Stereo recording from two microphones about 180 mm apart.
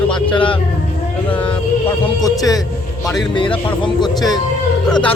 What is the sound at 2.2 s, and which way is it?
A man's voice, 20° left (ahead or behind).